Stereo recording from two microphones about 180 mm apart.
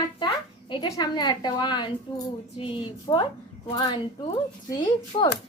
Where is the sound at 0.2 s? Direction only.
25° left (ahead or behind).